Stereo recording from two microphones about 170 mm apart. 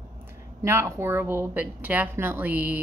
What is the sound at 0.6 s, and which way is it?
A woman's voice, 15° right (ahead or behind).